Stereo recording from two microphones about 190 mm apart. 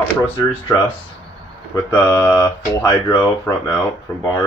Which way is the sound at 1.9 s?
10° left (ahead or behind).